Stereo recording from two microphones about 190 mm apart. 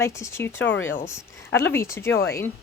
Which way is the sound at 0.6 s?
80° left.